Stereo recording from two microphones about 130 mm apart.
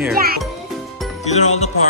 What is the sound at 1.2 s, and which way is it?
Speech, 60° left (ahead or behind).